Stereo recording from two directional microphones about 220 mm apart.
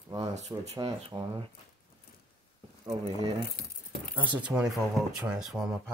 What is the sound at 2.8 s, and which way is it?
Speech, 25° right (ahead or behind).